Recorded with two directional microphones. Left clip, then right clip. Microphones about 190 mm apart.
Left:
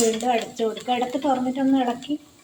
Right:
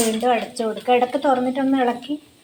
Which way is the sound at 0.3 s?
5° right (ahead or behind).